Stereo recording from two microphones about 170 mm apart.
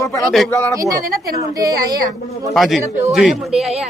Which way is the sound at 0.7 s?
20° right (ahead or behind).